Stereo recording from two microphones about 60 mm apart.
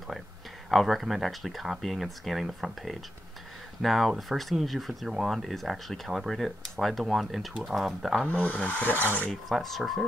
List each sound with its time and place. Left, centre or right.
0.7 s speech: centre
5.1 s speech: centre
5.4 s speech: centre
8.3 s filing: left
9.3 s speech: centre